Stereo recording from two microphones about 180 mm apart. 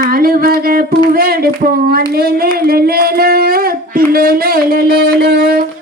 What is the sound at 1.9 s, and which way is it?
Speech, 60° right (ahead or behind).